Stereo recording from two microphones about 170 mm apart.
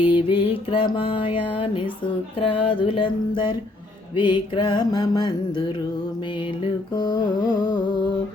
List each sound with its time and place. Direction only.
0.0 s mantra: 30° left (ahead or behind)
2.4 s music: 30° left (ahead or behind)
4.1 s mantra: 25° left (ahead or behind)
6.9 s mantra: 25° left (ahead or behind)